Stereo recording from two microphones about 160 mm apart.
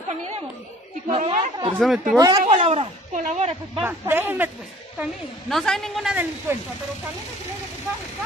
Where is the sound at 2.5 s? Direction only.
40° right (ahead or behind).